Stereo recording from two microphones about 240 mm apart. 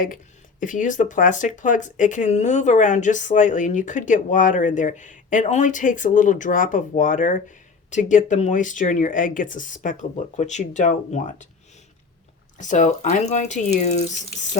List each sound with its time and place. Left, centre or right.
0.6 s speech: left
12.5 s speech: left